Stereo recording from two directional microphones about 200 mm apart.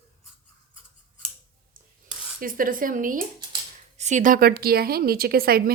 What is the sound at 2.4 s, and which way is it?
A woman's voice, 45° right (ahead or behind).